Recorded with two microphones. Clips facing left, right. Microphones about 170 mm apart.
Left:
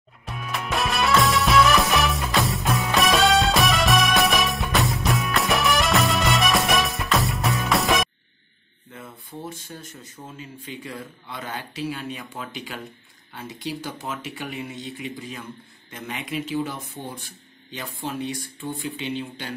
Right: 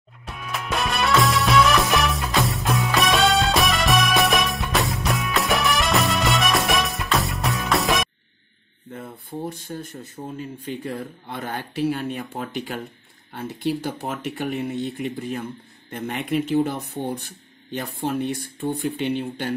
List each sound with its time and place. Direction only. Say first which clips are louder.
0.2 s music: left 1 dB; centre (ahead or behind)
8.9 s a sound: right 5 dB; 40° right (ahead or behind)
9.7 s speech: right 7 dB; 50° right (ahead or behind)